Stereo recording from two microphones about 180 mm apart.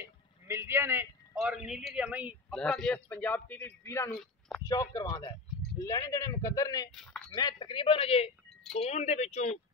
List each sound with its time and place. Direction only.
0.0 s vehicle: 15° right (ahead or behind)
1.4 s a man's voice: 5° right (ahead or behind)
2.5 s speech: 5° left (ahead or behind); by 6.9 s 20° left (ahead or behind)
6.9 s a man's voice: 5° left (ahead or behind)
7.2 s speech: 25° left (ahead or behind); by 9.6 s 40° left (ahead or behind)